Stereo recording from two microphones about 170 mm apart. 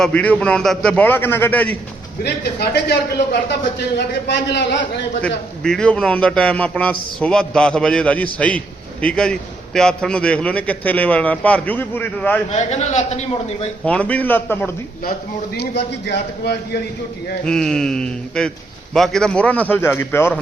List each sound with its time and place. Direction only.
0.0 s a man's voice: 10° left (ahead or behind)
2.2 s a man's voice: 75° left (ahead or behind)
3.8 s a man's voice: 85° left
5.2 s a man's voice: 5° left (ahead or behind)
12.5 s a man's voice: 40° left (ahead or behind)
13.8 s a man's voice: 10° left (ahead or behind)
15.5 s a man's voice: 80° left
17.4 s a man's voice: 5° left (ahead or behind)